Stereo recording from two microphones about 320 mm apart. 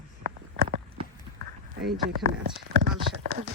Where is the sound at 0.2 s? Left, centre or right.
Right.